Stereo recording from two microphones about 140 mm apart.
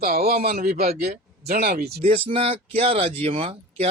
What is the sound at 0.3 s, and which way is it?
Speech, 90° right.